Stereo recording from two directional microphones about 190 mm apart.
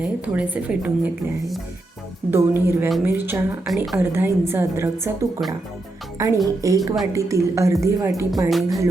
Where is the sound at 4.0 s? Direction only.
10° right (ahead or behind).